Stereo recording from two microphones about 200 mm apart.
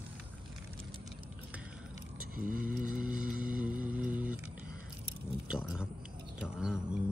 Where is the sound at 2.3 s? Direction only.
45° right (ahead or behind).